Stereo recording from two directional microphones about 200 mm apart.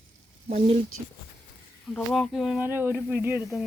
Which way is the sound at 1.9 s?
Centre (ahead or behind).